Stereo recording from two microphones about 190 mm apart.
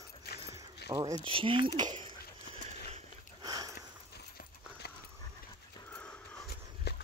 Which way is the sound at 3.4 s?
20° right (ahead or behind).